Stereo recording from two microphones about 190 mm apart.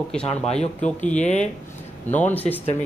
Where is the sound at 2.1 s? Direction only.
10° left (ahead or behind).